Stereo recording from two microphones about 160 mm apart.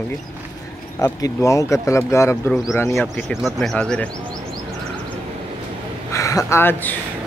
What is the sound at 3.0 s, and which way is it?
Speech, centre (ahead or behind).